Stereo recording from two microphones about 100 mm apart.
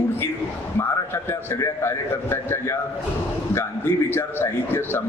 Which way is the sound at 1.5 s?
25° left (ahead or behind).